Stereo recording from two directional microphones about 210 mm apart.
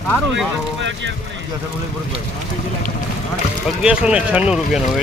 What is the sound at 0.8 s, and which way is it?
Speech, 60° right (ahead or behind).